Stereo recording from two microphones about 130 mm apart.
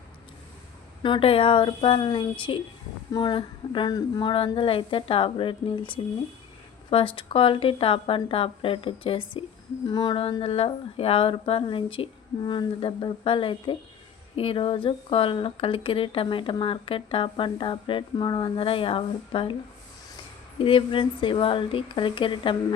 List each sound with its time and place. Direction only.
1.0 s speech: 40° left (ahead or behind)
20.7 s speech: 40° left (ahead or behind)